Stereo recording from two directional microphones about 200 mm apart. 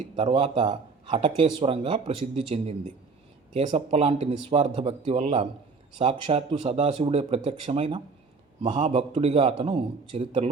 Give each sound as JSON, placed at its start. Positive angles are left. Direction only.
{"t": 0.2, "sound": "speech", "side_deg": -30}